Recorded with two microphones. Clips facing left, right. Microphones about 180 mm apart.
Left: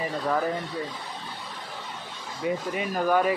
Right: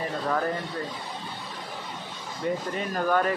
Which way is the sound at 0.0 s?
5° left (ahead or behind).